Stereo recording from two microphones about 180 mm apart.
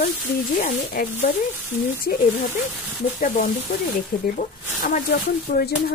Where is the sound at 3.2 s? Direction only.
45° left (ahead or behind).